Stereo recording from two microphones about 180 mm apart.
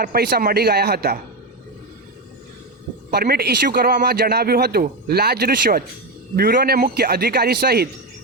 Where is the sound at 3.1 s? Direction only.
60° right (ahead or behind).